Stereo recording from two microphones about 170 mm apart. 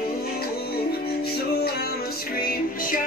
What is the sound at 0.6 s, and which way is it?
Music, 65° left (ahead or behind).